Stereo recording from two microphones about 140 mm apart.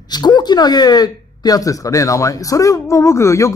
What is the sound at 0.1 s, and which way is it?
Speech, 30° left (ahead or behind).